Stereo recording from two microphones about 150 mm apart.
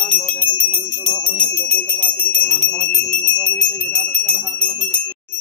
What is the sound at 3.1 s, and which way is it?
Bicycle bell, 5° left (ahead or behind).